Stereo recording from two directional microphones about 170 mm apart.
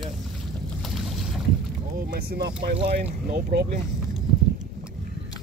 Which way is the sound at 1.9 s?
60° right (ahead or behind).